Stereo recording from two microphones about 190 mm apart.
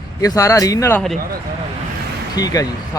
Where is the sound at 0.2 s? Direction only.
15° left (ahead or behind).